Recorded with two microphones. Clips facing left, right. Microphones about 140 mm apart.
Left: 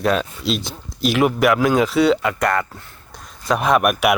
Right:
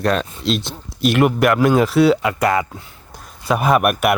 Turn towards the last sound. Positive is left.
turn(degrees=0)  # may be behind; listen again after turning